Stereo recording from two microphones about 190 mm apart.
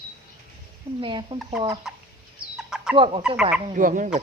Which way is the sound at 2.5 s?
5° right (ahead or behind).